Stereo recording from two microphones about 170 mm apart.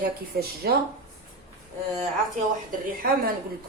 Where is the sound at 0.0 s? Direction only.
65° right (ahead or behind).